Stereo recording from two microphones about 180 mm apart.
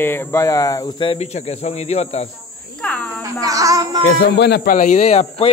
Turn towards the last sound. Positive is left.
turn(degrees=35)  # may be behind; listen again after turning